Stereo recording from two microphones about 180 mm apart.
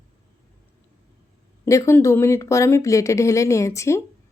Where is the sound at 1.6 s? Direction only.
15° left (ahead or behind).